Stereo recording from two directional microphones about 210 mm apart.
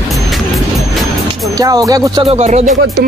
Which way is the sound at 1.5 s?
15° right (ahead or behind).